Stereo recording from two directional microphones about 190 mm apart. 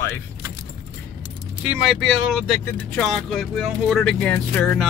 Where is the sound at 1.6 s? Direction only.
5° right (ahead or behind).